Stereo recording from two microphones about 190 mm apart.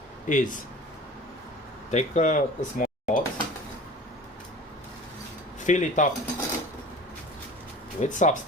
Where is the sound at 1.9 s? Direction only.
40° left (ahead or behind).